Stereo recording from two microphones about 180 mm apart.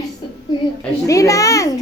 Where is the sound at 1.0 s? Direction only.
20° left (ahead or behind).